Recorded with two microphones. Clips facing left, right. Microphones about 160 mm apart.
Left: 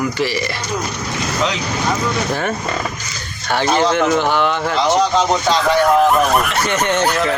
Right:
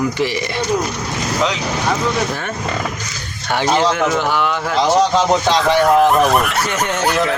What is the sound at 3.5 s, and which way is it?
Speech, 15° right (ahead or behind).